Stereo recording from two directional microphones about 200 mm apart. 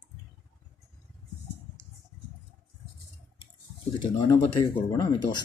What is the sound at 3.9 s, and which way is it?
Speech, 20° left (ahead or behind).